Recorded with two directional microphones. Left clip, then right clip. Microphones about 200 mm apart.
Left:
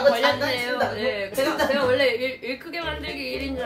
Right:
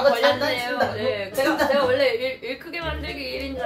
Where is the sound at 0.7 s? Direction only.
25° left (ahead or behind).